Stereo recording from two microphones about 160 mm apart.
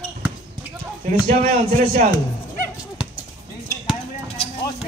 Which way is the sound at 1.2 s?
65° right (ahead or behind).